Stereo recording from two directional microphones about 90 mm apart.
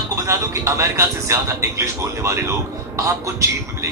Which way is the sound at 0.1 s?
35° right (ahead or behind).